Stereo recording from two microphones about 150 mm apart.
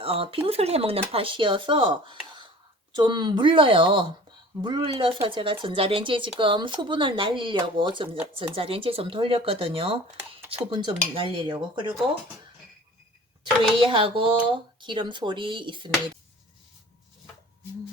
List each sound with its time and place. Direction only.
0.0 s speech: 35° right (ahead or behind)
13.8 s speech: 35° right (ahead or behind)